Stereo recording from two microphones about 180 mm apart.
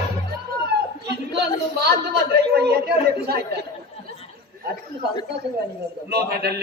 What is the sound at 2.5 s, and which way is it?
Speech, 65° right (ahead or behind).